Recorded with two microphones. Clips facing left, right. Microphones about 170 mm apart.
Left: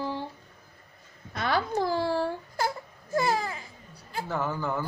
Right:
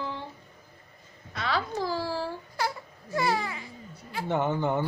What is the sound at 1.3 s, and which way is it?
Crying, 50° left (ahead or behind).